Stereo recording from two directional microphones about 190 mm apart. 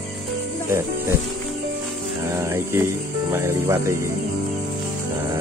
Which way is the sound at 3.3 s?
15° right (ahead or behind).